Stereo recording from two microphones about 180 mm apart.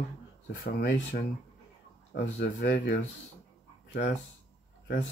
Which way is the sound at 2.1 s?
75° left (ahead or behind).